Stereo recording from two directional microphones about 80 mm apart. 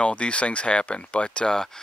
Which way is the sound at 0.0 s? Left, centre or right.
Centre.